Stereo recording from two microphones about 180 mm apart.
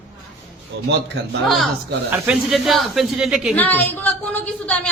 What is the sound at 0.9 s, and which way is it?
Speech, 75° right (ahead or behind).